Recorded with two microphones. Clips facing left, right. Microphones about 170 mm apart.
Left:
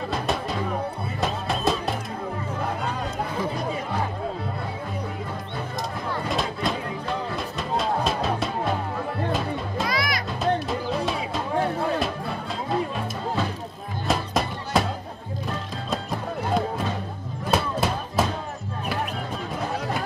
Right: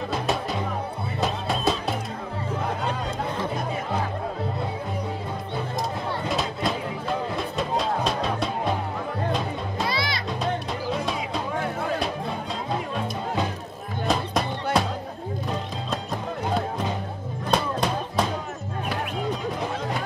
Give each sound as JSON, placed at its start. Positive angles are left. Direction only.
{"t": 0.1, "sound": "music", "side_deg": 0}
{"t": 6.2, "sound": "music", "side_deg": 0}
{"t": 9.8, "sound": "music", "side_deg": -30}
{"t": 10.4, "sound": "music", "side_deg": 0}
{"t": 14.0, "sound": "music", "side_deg": 0}
{"t": 17.5, "sound": "music", "side_deg": 5}